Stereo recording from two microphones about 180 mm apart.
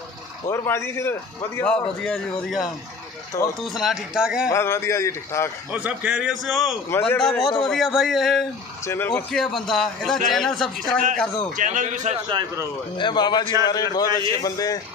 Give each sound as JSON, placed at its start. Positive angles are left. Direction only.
{"t": 0.5, "sound": "a man's voice", "side_deg": 15}
{"t": 4.5, "sound": "a man's voice", "side_deg": 15}
{"t": 5.7, "sound": "a man's voice", "side_deg": -10}
{"t": 8.8, "sound": "a man's voice", "side_deg": 15}
{"t": 11.5, "sound": "a man's voice", "side_deg": -45}
{"t": 12.3, "sound": "a man's voice", "side_deg": -25}
{"t": 12.9, "sound": "a man's voice", "side_deg": 25}